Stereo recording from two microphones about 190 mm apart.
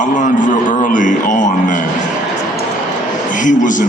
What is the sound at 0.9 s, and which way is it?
Speech, 40° left (ahead or behind).